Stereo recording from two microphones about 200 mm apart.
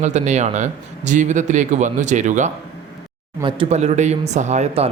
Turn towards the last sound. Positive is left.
turn(degrees=-35)  # may be behind; listen again after turning